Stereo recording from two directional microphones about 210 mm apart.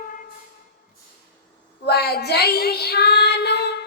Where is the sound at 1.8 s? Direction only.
50° left (ahead or behind).